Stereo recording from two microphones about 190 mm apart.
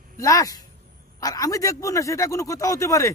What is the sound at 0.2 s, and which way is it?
Speech, 20° left (ahead or behind).